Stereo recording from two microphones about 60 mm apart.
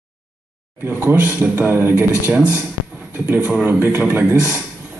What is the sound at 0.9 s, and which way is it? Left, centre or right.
A man's voice, right.